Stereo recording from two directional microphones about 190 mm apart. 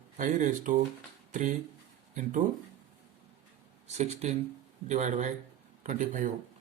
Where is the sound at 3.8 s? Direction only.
35° right (ahead or behind).